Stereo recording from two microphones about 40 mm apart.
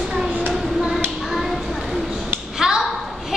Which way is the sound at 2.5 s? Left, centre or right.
Centre.